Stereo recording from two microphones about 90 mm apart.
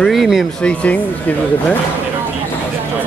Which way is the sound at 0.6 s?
15° left (ahead or behind).